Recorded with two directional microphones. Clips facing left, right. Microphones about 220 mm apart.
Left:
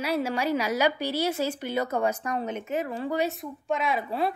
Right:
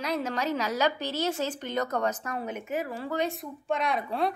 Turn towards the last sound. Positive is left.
turn(degrees=5)  # may be behind; listen again after turning